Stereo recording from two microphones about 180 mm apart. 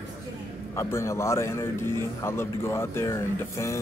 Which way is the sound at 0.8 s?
15° left (ahead or behind).